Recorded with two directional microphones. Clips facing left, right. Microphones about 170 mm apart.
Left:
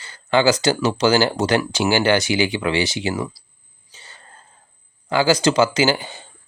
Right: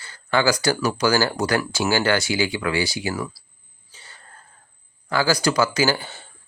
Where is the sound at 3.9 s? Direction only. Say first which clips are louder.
Left 2 dB; 20° left (ahead or behind).